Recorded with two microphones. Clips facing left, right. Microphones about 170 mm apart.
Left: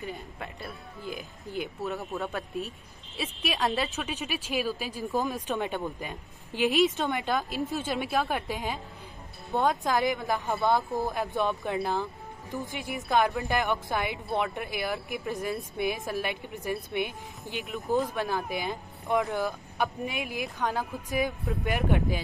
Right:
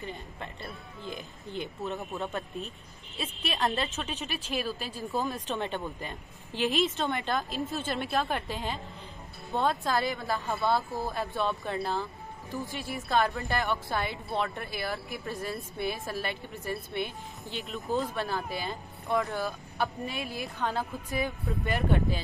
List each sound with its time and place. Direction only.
0.0 s speech: centre (ahead or behind)